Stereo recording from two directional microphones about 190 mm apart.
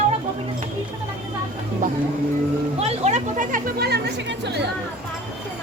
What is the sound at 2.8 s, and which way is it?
A woman's voice, 35° right (ahead or behind).